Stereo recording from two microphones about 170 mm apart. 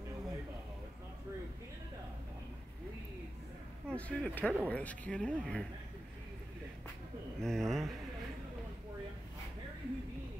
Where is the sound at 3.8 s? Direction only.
10° left (ahead or behind).